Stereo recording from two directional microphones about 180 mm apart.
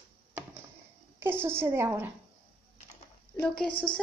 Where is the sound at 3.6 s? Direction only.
30° left (ahead or behind).